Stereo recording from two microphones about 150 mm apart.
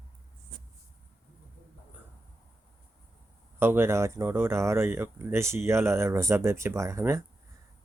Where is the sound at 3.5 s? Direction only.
15° right (ahead or behind).